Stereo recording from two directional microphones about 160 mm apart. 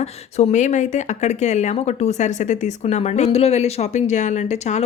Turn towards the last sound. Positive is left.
turn(degrees=45)  # may be behind; listen again after turning